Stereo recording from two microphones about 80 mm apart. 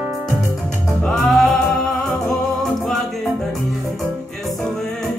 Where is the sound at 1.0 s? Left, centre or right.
Centre.